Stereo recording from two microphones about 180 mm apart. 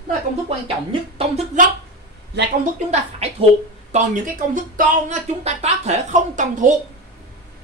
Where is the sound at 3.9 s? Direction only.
45° right (ahead or behind).